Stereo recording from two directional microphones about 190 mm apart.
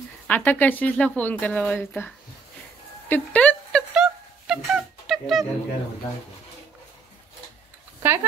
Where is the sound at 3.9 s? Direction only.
5° right (ahead or behind).